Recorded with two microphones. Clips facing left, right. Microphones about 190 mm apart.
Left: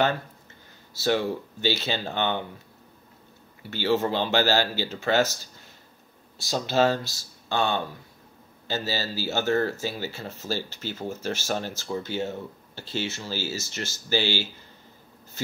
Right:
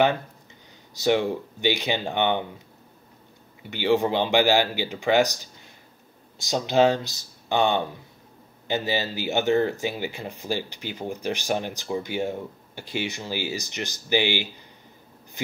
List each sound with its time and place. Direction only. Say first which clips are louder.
0.9 s speech: right 3 dB; 15° right (ahead or behind)
3.7 s speech: right 2 dB; 15° right (ahead or behind)